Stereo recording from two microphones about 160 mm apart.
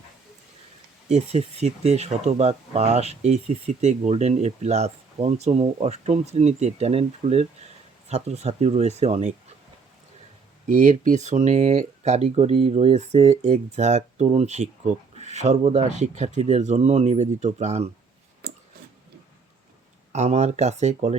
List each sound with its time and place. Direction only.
1.0 s speech: 45° right (ahead or behind)
10.7 s speech: 50° right (ahead or behind)
20.1 s speech: 45° right (ahead or behind)